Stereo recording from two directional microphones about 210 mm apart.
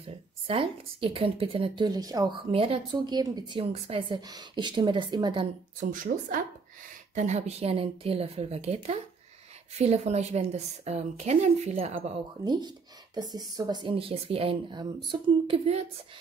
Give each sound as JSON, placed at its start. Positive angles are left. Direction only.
{"t": 0.0, "sound": "a woman's voice", "side_deg": -25}
{"t": 5.8, "sound": "a woman's voice", "side_deg": -40}